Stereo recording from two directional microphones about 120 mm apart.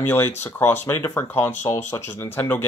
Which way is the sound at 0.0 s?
20° left (ahead or behind).